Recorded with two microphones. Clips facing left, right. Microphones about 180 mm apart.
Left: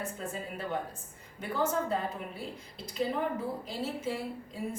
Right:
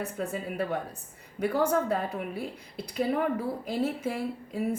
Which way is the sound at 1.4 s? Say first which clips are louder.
Right 5 dB; 70° right (ahead or behind).